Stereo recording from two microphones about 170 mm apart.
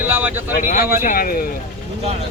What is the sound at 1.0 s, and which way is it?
Speech, 55° left (ahead or behind).